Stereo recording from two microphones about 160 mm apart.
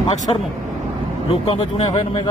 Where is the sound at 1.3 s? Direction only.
35° left (ahead or behind).